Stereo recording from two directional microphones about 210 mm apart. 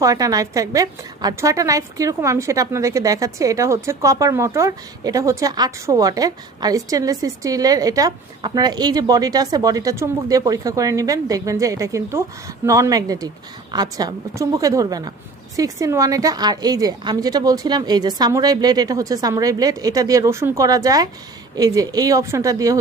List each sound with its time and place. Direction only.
0.0 s a woman's voice: 15° right (ahead or behind)